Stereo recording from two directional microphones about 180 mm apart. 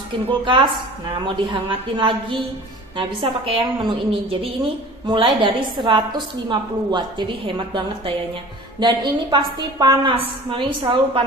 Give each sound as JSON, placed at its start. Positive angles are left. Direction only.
{"t": 0.3, "sound": "a woman's voice", "side_deg": -25}